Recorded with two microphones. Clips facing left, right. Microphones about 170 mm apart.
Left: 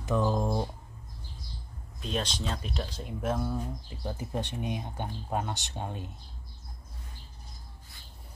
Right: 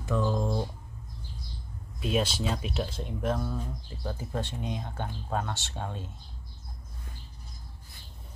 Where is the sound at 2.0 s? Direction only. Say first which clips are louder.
Right 5 dB; 5° right (ahead or behind); by 6.1 s 15° left (ahead or behind).